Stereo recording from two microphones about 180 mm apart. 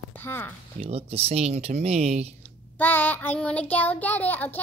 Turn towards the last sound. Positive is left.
turn(degrees=10)  # may be behind; listen again after turning